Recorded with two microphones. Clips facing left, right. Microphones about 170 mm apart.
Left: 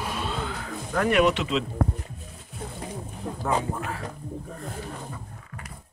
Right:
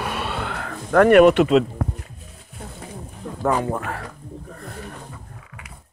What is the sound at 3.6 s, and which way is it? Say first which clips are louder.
Speech: right 5 dB; 70° right (ahead or behind).